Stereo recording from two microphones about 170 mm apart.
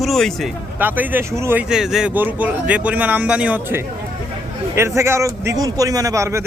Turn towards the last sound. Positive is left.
turn(degrees=-15)  # may be behind; listen again after turning